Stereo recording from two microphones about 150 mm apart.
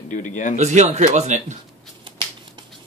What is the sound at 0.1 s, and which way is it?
Speech, 60° left (ahead or behind).